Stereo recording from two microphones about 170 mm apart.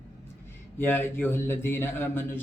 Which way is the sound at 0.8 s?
10° left (ahead or behind).